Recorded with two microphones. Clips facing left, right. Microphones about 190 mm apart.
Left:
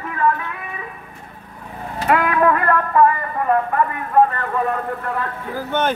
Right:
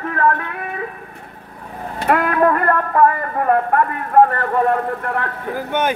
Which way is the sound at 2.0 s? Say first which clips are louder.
Right 1 dB; 45° right (ahead or behind).